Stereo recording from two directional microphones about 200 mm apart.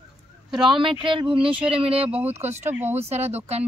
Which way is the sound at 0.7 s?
25° right (ahead or behind).